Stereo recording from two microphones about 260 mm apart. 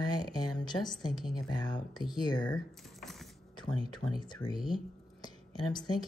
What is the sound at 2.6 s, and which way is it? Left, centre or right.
Typing, centre.